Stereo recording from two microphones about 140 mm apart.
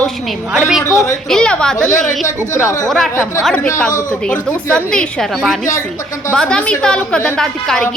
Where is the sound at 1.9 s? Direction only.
65° left (ahead or behind).